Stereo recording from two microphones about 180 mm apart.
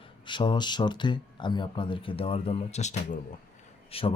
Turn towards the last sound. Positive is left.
turn(degrees=30)  # may be behind; listen again after turning